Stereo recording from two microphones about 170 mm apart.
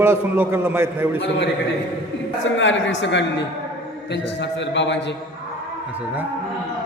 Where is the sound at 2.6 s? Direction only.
90° left.